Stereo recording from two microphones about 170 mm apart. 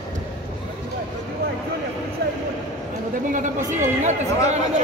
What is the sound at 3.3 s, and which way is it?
Speech, 45° right (ahead or behind).